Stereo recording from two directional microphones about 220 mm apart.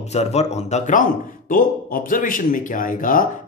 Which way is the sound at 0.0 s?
30° left (ahead or behind).